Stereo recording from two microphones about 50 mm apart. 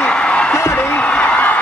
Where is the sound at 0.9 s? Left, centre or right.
Left.